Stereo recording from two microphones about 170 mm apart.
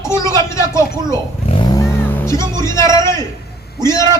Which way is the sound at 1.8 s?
15° left (ahead or behind).